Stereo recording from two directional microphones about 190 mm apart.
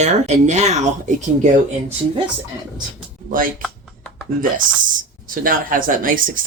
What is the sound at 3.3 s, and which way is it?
Speech, 45° right (ahead or behind).